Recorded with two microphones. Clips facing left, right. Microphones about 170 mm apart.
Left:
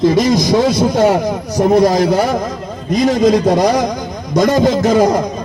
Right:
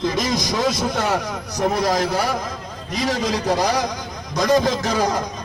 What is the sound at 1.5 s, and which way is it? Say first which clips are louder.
Speech: left 9 dB; 45° left (ahead or behind).